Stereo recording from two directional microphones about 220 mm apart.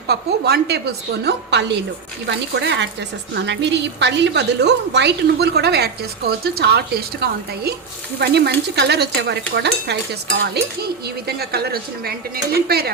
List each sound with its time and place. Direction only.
0.1 s a woman's voice: 45° right (ahead or behind)